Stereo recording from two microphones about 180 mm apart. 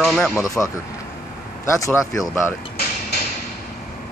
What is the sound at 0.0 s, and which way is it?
Speech, centre (ahead or behind).